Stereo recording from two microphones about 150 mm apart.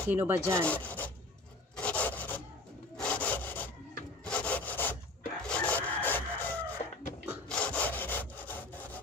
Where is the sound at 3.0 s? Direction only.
10° left (ahead or behind).